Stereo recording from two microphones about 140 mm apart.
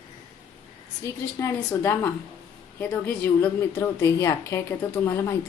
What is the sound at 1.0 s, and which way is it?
A woman's voice, 20° left (ahead or behind).